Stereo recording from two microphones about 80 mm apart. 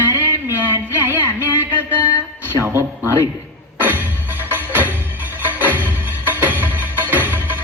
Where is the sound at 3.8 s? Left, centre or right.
Right.